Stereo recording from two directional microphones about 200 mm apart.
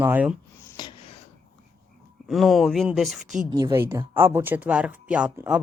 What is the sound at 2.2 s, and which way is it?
Speech, centre (ahead or behind).